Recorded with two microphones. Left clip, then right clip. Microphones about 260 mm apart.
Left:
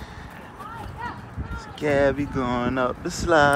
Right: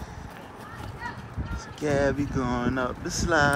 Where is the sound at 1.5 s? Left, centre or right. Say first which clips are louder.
Left 4 dB; centre.